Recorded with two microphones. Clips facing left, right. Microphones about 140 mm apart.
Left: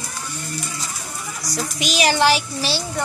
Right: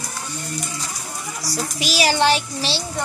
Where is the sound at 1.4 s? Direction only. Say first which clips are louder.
Even; 35° right (ahead or behind).